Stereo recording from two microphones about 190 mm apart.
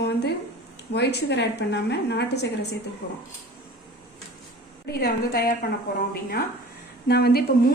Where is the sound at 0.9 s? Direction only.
60° left (ahead or behind).